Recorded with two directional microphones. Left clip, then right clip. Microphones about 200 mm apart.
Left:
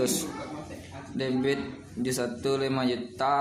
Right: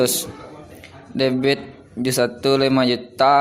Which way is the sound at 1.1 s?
40° right (ahead or behind).